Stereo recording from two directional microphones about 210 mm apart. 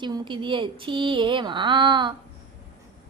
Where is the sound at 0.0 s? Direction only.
20° right (ahead or behind).